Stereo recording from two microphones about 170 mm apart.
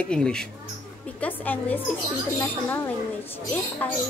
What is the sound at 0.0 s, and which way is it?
A woman's voice, 5° left (ahead or behind).